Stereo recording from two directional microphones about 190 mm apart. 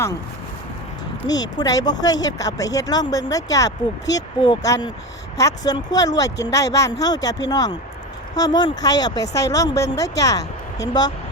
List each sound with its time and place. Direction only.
1.3 s speech: 20° left (ahead or behind)